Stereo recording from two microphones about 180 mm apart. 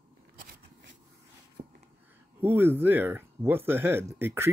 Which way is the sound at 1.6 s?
45° right (ahead or behind).